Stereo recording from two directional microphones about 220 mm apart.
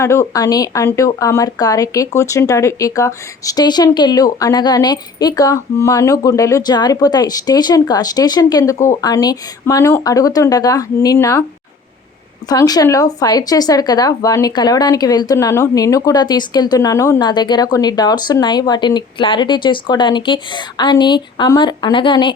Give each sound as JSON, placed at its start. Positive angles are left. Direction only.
{"t": 0.0, "sound": "speech", "side_deg": 10}
{"t": 12.5, "sound": "speech", "side_deg": 15}